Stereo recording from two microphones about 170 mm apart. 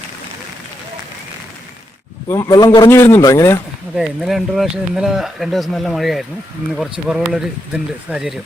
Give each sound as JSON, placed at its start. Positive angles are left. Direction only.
{"t": 2.3, "sound": "a man's voice", "side_deg": 20}
{"t": 3.9, "sound": "speech", "side_deg": 0}